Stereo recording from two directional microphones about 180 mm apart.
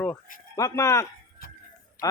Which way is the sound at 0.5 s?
15° left (ahead or behind).